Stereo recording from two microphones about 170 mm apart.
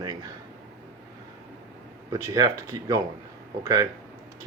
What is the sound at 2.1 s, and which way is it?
Speech, 20° right (ahead or behind).